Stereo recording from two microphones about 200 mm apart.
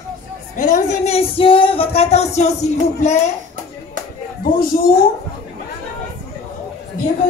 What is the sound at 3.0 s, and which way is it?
Speech, 35° left (ahead or behind).